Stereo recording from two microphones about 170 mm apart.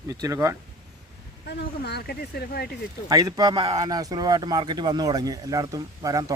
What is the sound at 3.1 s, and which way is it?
Speech, 20° right (ahead or behind).